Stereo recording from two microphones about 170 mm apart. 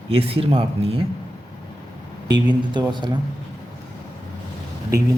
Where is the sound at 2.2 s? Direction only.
25° right (ahead or behind).